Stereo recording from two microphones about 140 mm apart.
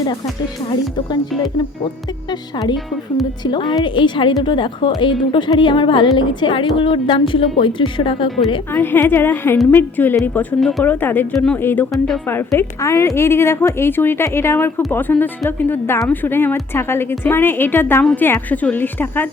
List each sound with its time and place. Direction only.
3.4 s a woman's voice: 30° left (ahead or behind)
8.7 s speech: 15° left (ahead or behind)
10.6 s speech: centre (ahead or behind)
10.8 s speech: 15° left (ahead or behind)